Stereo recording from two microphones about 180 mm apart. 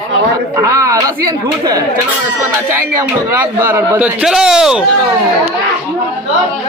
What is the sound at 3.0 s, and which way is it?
A man's voice, 15° right (ahead or behind).